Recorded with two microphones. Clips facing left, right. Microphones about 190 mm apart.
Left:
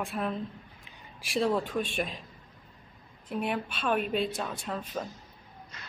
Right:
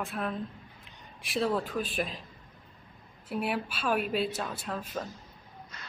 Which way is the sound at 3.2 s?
5° right (ahead or behind).